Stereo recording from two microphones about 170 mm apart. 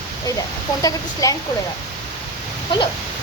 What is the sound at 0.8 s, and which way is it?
Speech, 20° left (ahead or behind).